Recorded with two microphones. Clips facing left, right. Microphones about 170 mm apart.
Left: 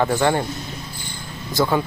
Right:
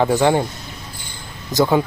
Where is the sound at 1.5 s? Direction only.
20° right (ahead or behind).